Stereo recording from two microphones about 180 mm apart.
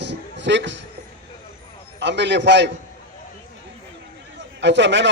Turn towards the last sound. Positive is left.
turn(degrees=-80)